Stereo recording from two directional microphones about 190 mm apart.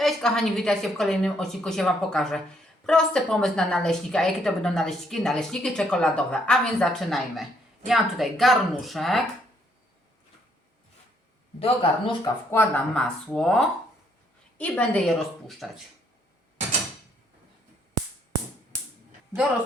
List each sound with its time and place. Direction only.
0.0 s a woman's voice: centre (ahead or behind)
11.6 s speech: 30° left (ahead or behind)
12.2 s a woman's voice: 10° left (ahead or behind)